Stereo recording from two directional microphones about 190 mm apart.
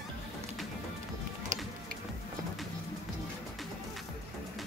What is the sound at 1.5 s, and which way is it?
Music, 40° right (ahead or behind).